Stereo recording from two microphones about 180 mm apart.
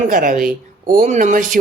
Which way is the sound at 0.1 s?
50° right (ahead or behind).